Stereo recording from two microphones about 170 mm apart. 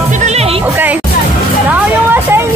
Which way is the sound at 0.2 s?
40° right (ahead or behind).